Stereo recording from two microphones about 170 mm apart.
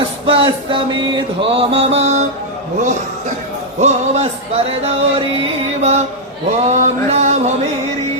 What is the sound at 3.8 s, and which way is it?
Music, 40° right (ahead or behind).